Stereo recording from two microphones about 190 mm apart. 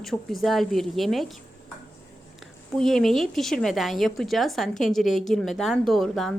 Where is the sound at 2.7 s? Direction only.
Centre (ahead or behind).